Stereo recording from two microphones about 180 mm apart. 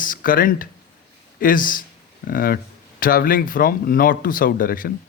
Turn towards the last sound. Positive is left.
turn(degrees=55)  # may be behind; listen again after turning